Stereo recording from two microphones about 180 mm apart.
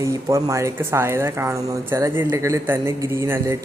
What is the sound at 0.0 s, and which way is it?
Speech, 15° right (ahead or behind).